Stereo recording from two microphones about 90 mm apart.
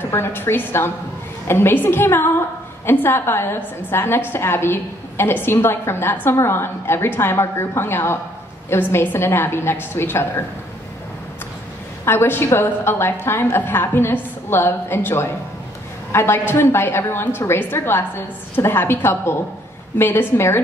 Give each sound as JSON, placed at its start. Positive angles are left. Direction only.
{"t": 0.0, "sound": "a woman's voice", "side_deg": 25}
{"t": 12.0, "sound": "a woman's voice", "side_deg": 25}